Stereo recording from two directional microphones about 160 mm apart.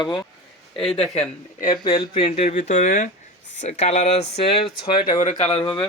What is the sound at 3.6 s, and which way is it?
Speech, 40° left (ahead or behind).